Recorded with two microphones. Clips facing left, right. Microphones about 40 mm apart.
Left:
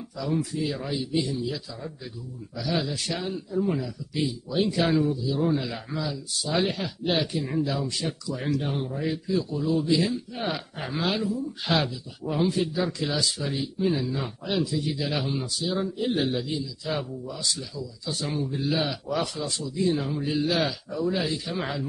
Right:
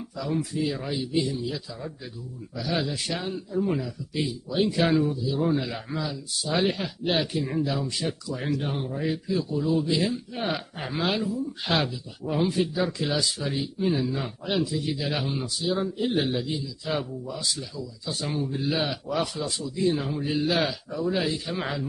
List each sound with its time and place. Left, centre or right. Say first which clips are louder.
0.2 s a man's voice: even; centre
7.8 s a man's voice: even; centre
8.4 s speech: left 2 dB; centre
12.5 s a man's voice: right 1 dB; centre